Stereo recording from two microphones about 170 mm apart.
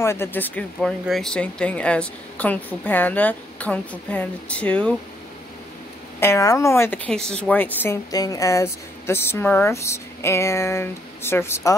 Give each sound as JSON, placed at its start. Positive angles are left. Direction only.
{"t": 0.0, "sound": "speech", "side_deg": 15}
{"t": 6.1, "sound": "speech", "side_deg": 15}
{"t": 7.1, "sound": "speech", "side_deg": 5}